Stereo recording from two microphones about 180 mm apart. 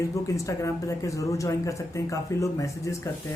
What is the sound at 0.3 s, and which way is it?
Speech, 15° left (ahead or behind).